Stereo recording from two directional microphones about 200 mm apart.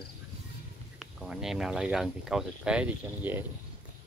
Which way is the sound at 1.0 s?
Centre (ahead or behind).